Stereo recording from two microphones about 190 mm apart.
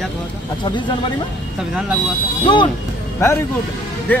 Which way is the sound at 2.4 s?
25° left (ahead or behind).